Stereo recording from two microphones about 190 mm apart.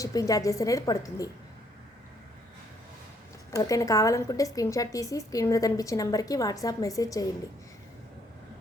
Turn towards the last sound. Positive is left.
turn(degrees=20)  # may be behind; listen again after turning